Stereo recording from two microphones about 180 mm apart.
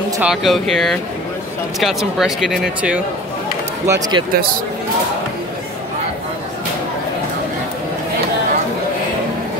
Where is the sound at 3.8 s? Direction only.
20° right (ahead or behind).